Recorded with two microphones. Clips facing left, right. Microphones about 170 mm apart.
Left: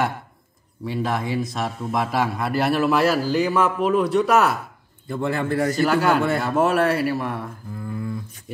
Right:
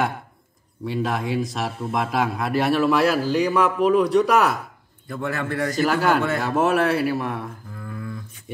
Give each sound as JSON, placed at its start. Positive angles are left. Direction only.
{"t": 0.8, "sound": "a man's voice", "side_deg": 0}
{"t": 5.0, "sound": "a man's voice", "side_deg": 25}
{"t": 5.9, "sound": "a man's voice", "side_deg": 0}
{"t": 7.9, "sound": "a sound", "side_deg": 25}